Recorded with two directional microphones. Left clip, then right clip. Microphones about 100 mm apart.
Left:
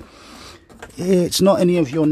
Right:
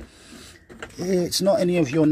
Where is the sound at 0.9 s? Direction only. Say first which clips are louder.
Left 6 dB; 60° left (ahead or behind).